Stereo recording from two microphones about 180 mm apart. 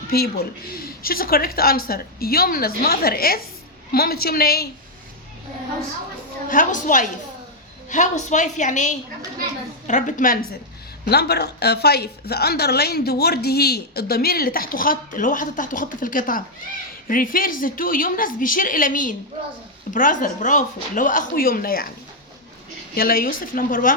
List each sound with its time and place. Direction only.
0.8 s a woman's voice: 55° left (ahead or behind)
6.5 s a woman's voice: 45° left (ahead or behind)
11.1 s a woman's voice: 65° left (ahead or behind)
23.0 s a woman's voice: 55° left (ahead or behind)